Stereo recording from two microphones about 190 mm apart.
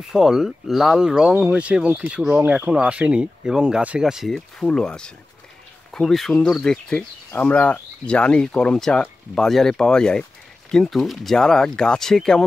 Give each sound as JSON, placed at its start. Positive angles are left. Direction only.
{"t": 0.1, "sound": "speech", "side_deg": 0}